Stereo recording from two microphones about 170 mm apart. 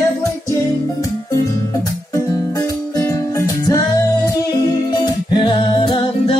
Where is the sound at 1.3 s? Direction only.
20° left (ahead or behind).